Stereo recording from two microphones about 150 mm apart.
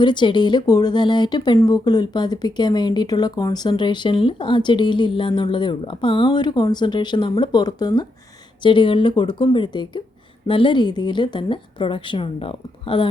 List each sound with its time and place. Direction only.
0.0 s speech: 30° left (ahead or behind)